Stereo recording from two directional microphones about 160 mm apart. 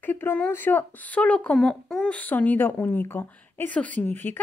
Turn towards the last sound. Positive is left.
turn(degrees=10)  # may be behind; listen again after turning